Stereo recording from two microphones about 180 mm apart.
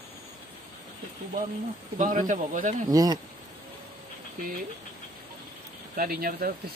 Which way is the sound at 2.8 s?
20° right (ahead or behind).